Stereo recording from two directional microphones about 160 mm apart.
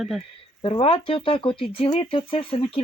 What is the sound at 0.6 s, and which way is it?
Speech, 35° left (ahead or behind).